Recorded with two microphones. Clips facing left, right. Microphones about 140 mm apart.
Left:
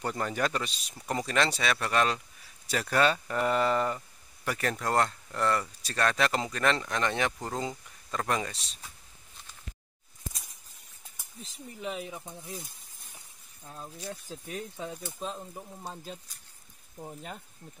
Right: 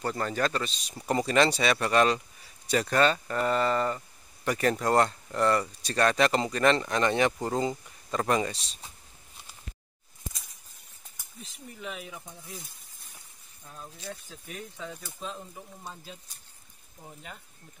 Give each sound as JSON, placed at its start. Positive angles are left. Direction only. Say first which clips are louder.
{"t": 0.0, "sound": "speech", "louder": "right 2 dB", "side_deg": 15}
{"t": 0.9, "sound": "speech", "louder": "right 5 dB", "side_deg": 0}
{"t": 4.5, "sound": "speech", "louder": "right 5 dB", "side_deg": 0}
{"t": 11.4, "sound": "speech", "louder": "left 3 dB", "side_deg": 30}
{"t": 13.7, "sound": "speech", "louder": "left 1 dB", "side_deg": 20}